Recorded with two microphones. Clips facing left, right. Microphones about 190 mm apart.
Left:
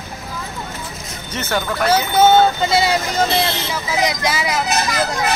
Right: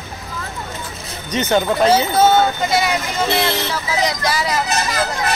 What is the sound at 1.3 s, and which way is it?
Speech, 20° right (ahead or behind).